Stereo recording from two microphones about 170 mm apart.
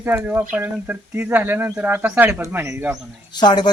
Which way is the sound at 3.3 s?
25° left (ahead or behind).